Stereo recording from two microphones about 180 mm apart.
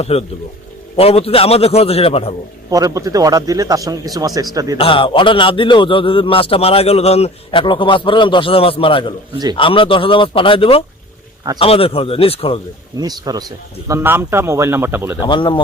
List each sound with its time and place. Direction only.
0.0 s a man's voice: 35° left (ahead or behind)
2.6 s a man's voice: 20° right (ahead or behind)
4.8 s a man's voice: 30° left (ahead or behind)
13.0 s a man's voice: 20° right (ahead or behind)
15.2 s a man's voice: 25° left (ahead or behind)